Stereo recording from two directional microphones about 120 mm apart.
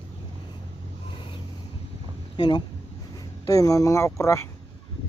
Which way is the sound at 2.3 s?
35° left (ahead or behind).